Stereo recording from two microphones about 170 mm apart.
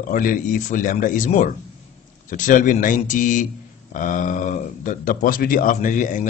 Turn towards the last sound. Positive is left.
turn(degrees=50)  # may be behind; listen again after turning